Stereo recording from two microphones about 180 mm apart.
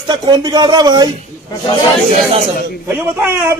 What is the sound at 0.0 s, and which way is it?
Speech, 25° right (ahead or behind).